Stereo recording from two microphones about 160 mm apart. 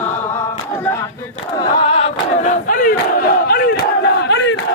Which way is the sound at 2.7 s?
60° left (ahead or behind).